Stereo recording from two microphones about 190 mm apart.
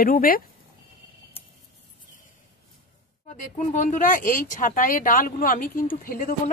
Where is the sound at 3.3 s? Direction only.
40° left (ahead or behind).